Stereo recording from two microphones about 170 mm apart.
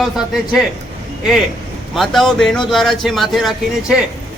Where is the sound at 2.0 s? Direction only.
Centre (ahead or behind).